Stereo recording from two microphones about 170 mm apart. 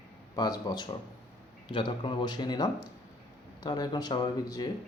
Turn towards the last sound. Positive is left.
turn(degrees=20)  # may be behind; listen again after turning